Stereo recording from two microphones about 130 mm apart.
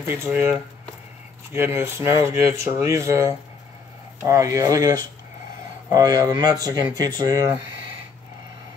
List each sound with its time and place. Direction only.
0.0 s speech: 15° right (ahead or behind)